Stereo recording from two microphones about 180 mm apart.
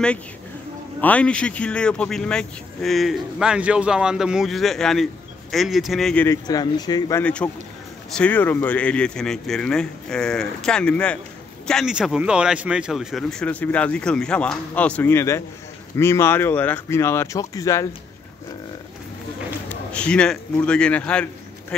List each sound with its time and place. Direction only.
1.0 s speech: 5° left (ahead or behind)
6.2 s speech: 20° left (ahead or behind)
7.2 s speech: 5° left (ahead or behind)
19.7 s a man's voice: 5° left (ahead or behind)